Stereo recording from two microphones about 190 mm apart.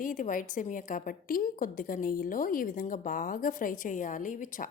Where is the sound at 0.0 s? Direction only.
45° left (ahead or behind).